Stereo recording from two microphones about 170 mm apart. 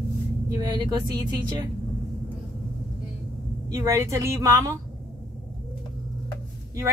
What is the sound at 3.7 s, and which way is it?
A woman's voice, 15° right (ahead or behind).